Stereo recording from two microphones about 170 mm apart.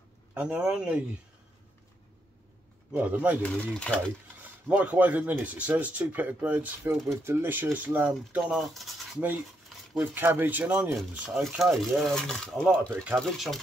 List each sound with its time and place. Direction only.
0.3 s speech: 10° right (ahead or behind)
2.9 s speech: 10° right (ahead or behind)
3.7 s speech: 5° left (ahead or behind)
4.6 s speech: 10° right (ahead or behind)
9.9 s speech: 10° right (ahead or behind)